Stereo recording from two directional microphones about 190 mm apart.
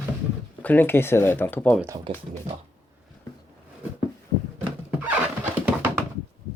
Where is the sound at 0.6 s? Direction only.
10° left (ahead or behind).